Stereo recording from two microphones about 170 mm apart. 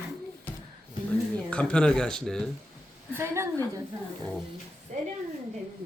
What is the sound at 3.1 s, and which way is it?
Speech, 15° right (ahead or behind).